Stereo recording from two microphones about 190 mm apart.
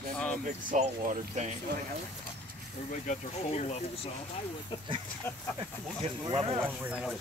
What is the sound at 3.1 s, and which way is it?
Speech, 35° left (ahead or behind).